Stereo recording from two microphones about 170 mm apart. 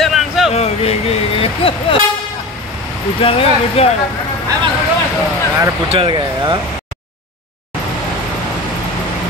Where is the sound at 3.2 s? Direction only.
35° left (ahead or behind).